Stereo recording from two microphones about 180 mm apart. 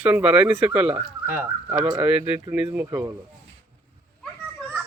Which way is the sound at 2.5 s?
10° right (ahead or behind).